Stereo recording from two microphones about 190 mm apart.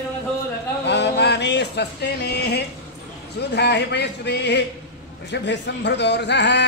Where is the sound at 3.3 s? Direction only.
65° left (ahead or behind).